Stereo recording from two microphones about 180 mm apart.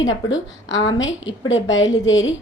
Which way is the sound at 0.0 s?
90° left.